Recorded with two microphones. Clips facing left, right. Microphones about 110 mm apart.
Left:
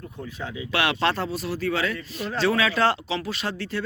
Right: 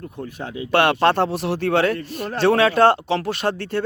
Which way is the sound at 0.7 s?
55° right (ahead or behind).